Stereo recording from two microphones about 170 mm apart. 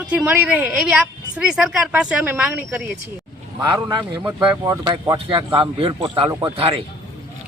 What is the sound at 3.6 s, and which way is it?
A man's voice, 25° right (ahead or behind).